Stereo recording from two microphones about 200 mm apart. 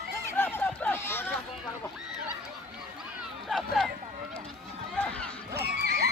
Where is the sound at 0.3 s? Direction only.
10° left (ahead or behind).